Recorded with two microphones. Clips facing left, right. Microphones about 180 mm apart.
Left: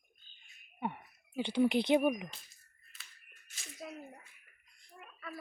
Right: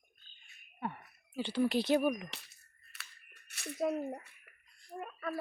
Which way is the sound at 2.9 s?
70° right (ahead or behind).